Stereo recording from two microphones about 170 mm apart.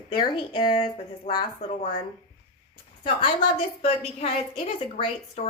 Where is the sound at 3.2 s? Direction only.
30° left (ahead or behind).